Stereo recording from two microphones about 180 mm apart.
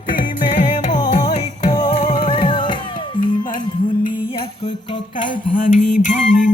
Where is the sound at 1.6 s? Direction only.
25° left (ahead or behind).